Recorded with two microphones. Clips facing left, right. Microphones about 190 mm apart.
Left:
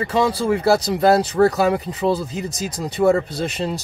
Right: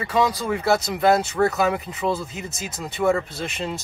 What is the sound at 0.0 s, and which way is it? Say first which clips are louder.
Speech: left 3 dB; 30° left (ahead or behind).